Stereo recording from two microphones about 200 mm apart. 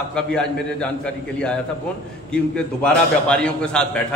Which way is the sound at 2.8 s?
5° left (ahead or behind).